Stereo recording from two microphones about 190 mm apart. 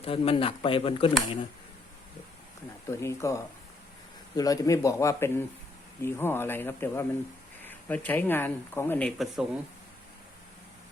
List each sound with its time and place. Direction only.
0.0 s speech: 30° left (ahead or behind)
2.8 s speech: 15° left (ahead or behind); by 9.5 s centre (ahead or behind)